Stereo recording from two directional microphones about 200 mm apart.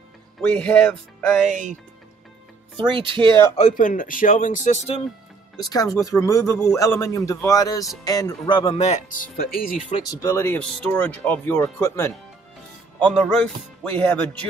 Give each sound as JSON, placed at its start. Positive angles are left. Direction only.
{"t": 0.4, "sound": "speech", "side_deg": 5}
{"t": 1.5, "sound": "speech", "side_deg": -40}
{"t": 2.9, "sound": "speech", "side_deg": -25}
{"t": 3.5, "sound": "speech", "side_deg": 35}
{"t": 5.6, "sound": "speech", "side_deg": 20}
{"t": 9.4, "sound": "speech", "side_deg": 45}
{"t": 10.2, "sound": "speech", "side_deg": 15}